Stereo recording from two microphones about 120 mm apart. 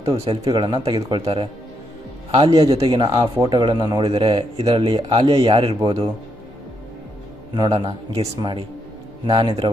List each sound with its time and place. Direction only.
0.0 s speech: 55° right (ahead or behind)
0.5 s speech: 40° right (ahead or behind)
2.9 s speech: 40° right (ahead or behind)
7.5 s speech: 40° right (ahead or behind)